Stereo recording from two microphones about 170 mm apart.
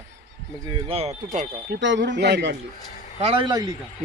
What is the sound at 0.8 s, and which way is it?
Speech, 35° right (ahead or behind).